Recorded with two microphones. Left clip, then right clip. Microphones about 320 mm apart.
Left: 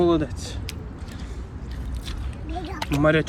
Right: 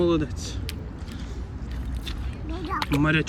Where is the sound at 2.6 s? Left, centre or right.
Centre.